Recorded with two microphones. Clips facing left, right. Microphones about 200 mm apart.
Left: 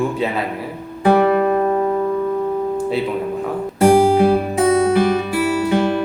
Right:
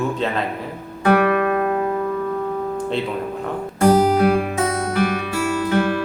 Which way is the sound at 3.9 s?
30° left (ahead or behind).